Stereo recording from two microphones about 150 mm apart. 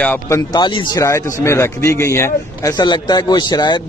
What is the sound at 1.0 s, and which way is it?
A man's voice, 20° left (ahead or behind).